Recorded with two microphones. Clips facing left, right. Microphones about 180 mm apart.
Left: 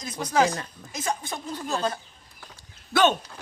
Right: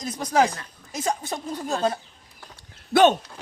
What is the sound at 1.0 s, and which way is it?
Speech, 40° right (ahead or behind).